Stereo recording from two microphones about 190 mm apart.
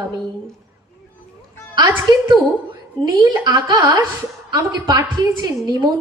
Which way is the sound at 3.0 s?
20° right (ahead or behind).